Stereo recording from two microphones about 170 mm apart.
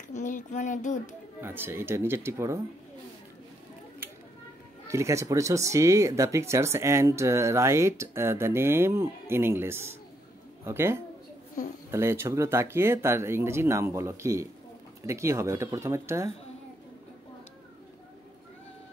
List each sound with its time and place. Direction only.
0.1 s speech: 45° left (ahead or behind)
1.4 s speech: 15° right (ahead or behind)
4.8 s speech: 15° right (ahead or behind)